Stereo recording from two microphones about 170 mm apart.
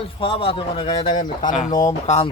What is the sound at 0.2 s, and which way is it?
Speech, 30° left (ahead or behind).